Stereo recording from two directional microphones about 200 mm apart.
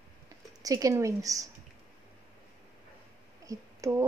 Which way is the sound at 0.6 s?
15° right (ahead or behind).